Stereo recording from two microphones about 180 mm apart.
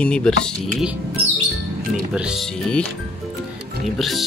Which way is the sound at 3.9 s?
Centre (ahead or behind).